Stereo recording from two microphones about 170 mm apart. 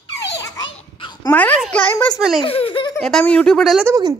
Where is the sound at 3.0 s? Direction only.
5° left (ahead or behind).